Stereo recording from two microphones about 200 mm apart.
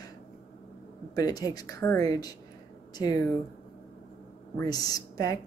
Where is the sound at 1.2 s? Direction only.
20° left (ahead or behind).